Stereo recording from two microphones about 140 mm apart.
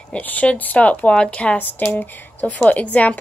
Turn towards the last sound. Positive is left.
turn(degrees=10)  # may be behind; listen again after turning